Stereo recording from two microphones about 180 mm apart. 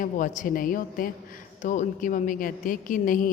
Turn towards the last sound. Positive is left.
turn(degrees=50)  # may be behind; listen again after turning